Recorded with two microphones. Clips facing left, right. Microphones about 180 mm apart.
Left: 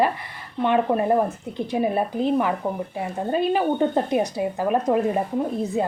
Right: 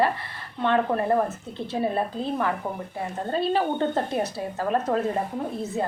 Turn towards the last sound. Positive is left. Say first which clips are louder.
# left 5 dB
turn(degrees=15)  # may be behind; listen again after turning